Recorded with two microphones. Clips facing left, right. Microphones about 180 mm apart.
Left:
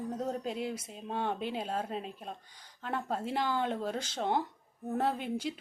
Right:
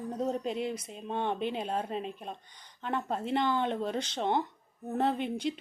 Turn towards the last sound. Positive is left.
turn(degrees=5)  # may be behind; listen again after turning